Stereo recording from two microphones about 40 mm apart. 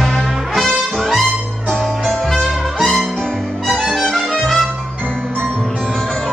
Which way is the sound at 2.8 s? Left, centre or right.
Centre.